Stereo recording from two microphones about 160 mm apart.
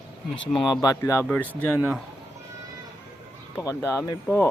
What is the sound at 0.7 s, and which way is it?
Speech, 25° left (ahead or behind).